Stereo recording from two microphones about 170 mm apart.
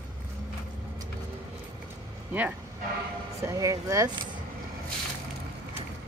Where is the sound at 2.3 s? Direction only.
10° right (ahead or behind).